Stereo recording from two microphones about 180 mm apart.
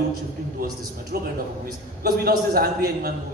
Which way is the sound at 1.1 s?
55° right (ahead or behind).